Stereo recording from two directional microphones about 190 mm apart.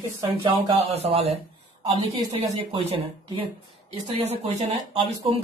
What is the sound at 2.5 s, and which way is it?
Speech, 30° right (ahead or behind).